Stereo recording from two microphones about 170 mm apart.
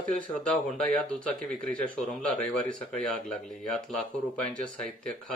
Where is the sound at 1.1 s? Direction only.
5° left (ahead or behind).